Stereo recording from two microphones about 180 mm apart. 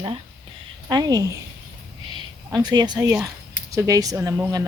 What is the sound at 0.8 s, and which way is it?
Speech, 20° right (ahead or behind).